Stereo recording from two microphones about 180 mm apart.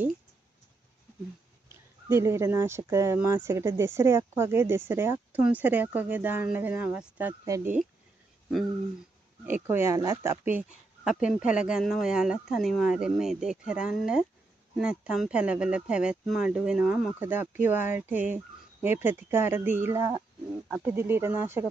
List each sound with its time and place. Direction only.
2.0 s speech: 15° right (ahead or behind)
9.5 s speech: 10° right (ahead or behind)